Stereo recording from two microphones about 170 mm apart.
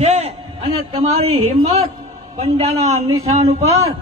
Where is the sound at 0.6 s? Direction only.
30° right (ahead or behind).